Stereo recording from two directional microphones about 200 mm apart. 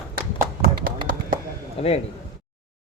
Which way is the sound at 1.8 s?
30° left (ahead or behind).